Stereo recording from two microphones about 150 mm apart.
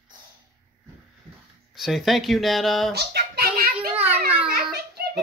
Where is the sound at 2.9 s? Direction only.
90° right.